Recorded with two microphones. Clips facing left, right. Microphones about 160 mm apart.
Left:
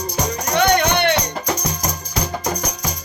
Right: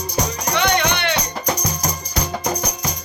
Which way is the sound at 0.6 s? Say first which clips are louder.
Left 4 dB; 50° left (ahead or behind).